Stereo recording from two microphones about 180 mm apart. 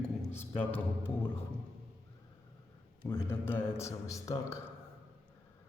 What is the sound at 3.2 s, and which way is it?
A man's voice, 15° left (ahead or behind).